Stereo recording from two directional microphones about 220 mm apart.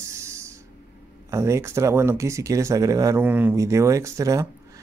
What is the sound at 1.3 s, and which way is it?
Speech, 15° right (ahead or behind).